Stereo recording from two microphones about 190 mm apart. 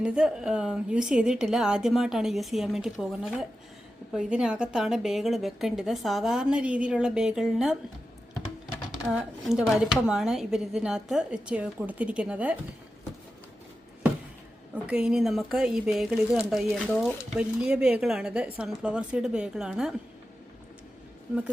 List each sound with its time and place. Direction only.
0.0 s a woman's voice: 5° right (ahead or behind)
8.9 s a woman's voice: 5° right (ahead or behind)
14.8 s a woman's voice: 5° right (ahead or behind)